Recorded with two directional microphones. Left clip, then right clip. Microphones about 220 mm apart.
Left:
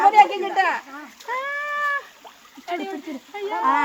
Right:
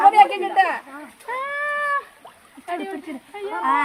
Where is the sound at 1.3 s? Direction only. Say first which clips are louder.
Right 1 dB; 15° right (ahead or behind).